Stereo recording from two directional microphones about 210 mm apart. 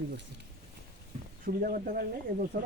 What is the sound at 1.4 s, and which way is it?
Speech, 45° right (ahead or behind).